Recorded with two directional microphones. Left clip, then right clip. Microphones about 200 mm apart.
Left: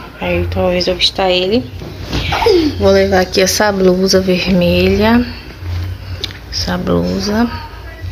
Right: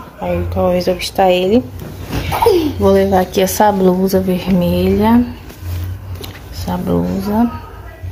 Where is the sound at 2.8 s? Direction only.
10° right (ahead or behind).